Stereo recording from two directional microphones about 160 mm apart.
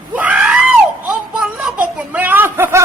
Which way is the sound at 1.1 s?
5° right (ahead or behind).